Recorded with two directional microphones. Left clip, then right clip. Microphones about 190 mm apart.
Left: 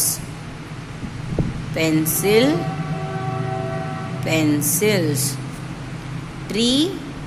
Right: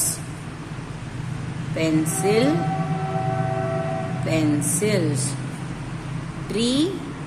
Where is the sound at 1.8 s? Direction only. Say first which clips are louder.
Left 2 dB; 25° left (ahead or behind).